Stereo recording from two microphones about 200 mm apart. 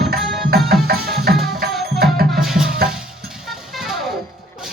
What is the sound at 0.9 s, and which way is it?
Music, 50° right (ahead or behind).